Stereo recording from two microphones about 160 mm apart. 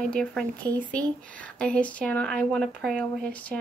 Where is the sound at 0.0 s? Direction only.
5° left (ahead or behind).